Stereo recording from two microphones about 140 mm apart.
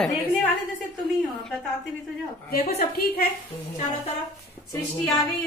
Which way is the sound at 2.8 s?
90° left.